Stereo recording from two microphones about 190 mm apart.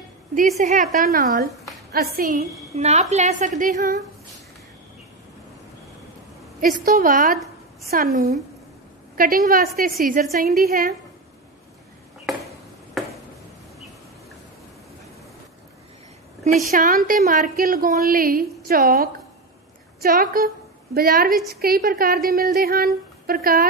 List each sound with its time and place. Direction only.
0.6 s a woman's voice: 40° right (ahead or behind)
2.7 s a woman's voice: 35° right (ahead or behind)
6.6 s a woman's voice: 50° right (ahead or behind)
13.0 s a sound: centre (ahead or behind)
16.5 s a woman's voice: 45° right (ahead or behind)